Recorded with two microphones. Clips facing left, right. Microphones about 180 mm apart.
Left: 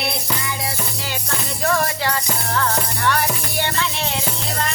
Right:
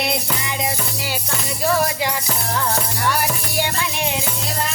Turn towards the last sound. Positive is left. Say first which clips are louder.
# right 1 dB
turn(degrees=-10)  # may be behind; listen again after turning